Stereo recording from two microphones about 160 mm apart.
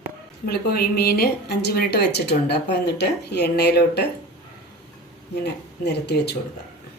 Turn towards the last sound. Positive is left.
turn(degrees=90)